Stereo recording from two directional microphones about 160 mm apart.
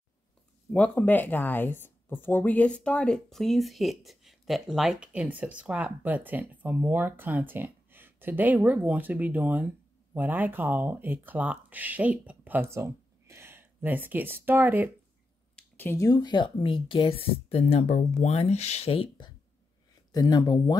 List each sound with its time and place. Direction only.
0.7 s speech: 10° left (ahead or behind); by 14.9 s 10° right (ahead or behind)
15.5 s speech: 10° left (ahead or behind)